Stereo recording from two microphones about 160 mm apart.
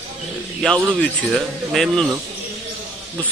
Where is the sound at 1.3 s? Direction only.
Centre (ahead or behind).